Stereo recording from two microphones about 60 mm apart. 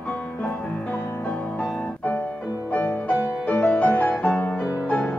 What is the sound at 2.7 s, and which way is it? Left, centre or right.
Music, left.